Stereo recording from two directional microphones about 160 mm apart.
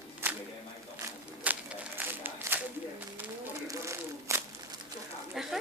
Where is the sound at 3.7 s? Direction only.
20° right (ahead or behind).